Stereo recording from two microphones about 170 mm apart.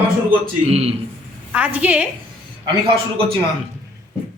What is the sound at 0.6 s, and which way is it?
Speech, 40° right (ahead or behind).